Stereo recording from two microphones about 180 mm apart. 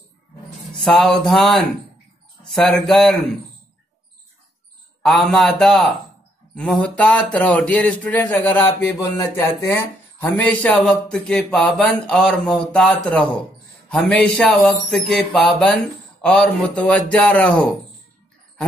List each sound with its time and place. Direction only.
0.8 s speech: 5° left (ahead or behind)
5.0 s speech: centre (ahead or behind)